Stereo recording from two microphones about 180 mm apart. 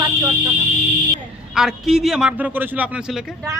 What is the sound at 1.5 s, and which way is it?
A man's voice, centre (ahead or behind).